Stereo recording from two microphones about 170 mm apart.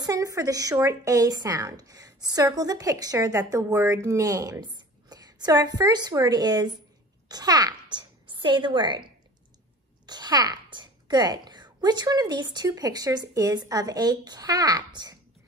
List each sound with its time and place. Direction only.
0.0 s a child's voice: 20° right (ahead or behind)
10.0 s speech: 25° right (ahead or behind)